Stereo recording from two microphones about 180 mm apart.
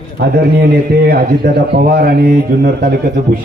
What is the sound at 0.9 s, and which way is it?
Speech, 60° right (ahead or behind).